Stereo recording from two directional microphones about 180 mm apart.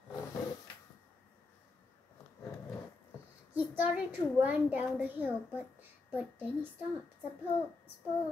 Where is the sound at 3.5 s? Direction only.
10° right (ahead or behind).